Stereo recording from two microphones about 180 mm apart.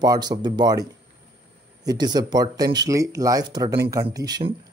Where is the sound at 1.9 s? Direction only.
20° right (ahead or behind).